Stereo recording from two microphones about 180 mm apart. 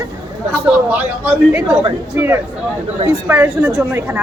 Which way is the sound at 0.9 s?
10° right (ahead or behind).